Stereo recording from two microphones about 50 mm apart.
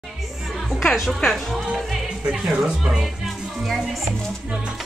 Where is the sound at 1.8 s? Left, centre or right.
Centre.